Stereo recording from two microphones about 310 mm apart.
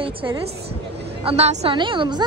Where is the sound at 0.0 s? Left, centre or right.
Centre.